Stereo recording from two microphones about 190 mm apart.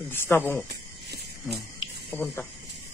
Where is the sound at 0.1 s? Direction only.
10° left (ahead or behind).